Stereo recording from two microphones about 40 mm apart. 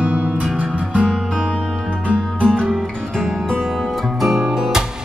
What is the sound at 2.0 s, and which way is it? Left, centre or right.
Music, left.